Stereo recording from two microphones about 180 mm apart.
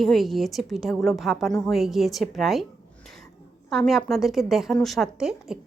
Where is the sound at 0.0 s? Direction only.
Centre (ahead or behind).